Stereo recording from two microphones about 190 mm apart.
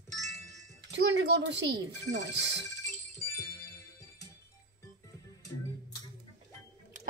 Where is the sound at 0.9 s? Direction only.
65° right (ahead or behind).